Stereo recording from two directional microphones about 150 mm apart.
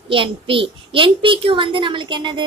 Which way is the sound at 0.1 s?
35° right (ahead or behind).